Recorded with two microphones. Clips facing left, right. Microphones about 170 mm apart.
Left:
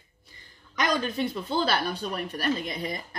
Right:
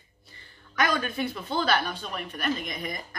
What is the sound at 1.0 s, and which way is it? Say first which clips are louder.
Speech: left 2 dB; 30° left (ahead or behind).